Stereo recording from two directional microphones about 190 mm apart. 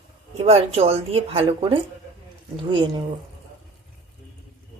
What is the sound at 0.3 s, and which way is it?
Speech, 35° right (ahead or behind).